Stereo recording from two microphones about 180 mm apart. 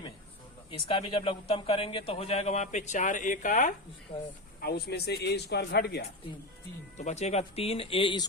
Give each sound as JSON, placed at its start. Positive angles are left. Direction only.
{"t": 0.7, "sound": "speech", "side_deg": 30}
{"t": 4.6, "sound": "a man's voice", "side_deg": 65}
{"t": 6.9, "sound": "speech", "side_deg": 40}